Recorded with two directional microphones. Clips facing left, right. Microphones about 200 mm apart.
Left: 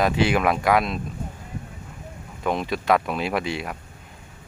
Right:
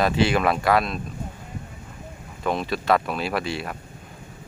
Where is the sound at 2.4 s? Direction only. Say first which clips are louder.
Even; 15° left (ahead or behind).